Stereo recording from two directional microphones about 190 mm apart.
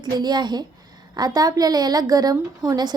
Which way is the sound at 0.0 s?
20° right (ahead or behind).